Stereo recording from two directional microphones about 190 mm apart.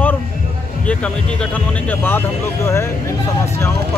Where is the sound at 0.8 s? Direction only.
5° left (ahead or behind).